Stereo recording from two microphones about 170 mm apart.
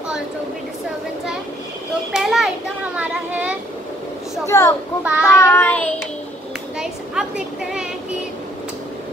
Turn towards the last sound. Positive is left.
turn(degrees=-5)  # may be behind; listen again after turning